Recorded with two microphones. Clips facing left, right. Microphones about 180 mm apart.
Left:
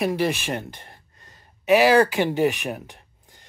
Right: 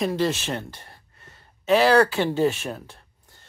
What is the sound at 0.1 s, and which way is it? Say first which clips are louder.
Speech: left 1 dB; 15° left (ahead or behind).